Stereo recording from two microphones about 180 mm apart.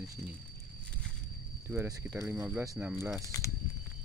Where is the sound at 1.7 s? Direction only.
15° right (ahead or behind).